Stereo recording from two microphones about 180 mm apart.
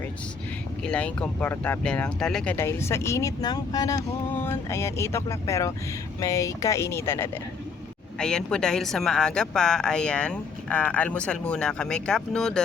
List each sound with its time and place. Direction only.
0.9 s speech: 5° left (ahead or behind)
8.2 s a woman's voice: 5° left (ahead or behind)